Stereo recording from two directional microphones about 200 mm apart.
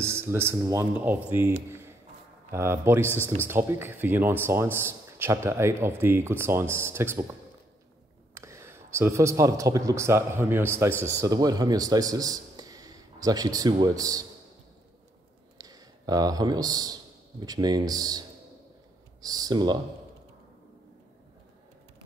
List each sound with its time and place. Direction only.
0.0 s speech: 10° right (ahead or behind)
8.5 s a man's voice: 15° right (ahead or behind)
15.5 s a man's voice: 20° right (ahead or behind)
19.2 s speech: 20° right (ahead or behind)